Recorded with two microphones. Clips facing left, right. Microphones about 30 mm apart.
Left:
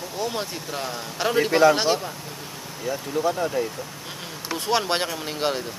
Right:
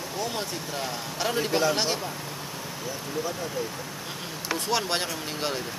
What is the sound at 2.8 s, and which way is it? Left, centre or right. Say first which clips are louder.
Speech: left 8 dB; centre.